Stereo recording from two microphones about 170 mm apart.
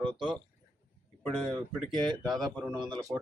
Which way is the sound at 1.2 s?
5° left (ahead or behind).